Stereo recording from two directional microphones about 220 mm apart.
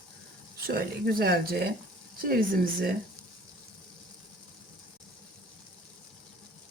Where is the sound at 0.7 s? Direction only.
45° right (ahead or behind).